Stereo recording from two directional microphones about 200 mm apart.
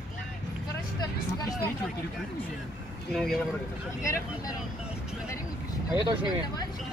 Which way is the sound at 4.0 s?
15° left (ahead or behind).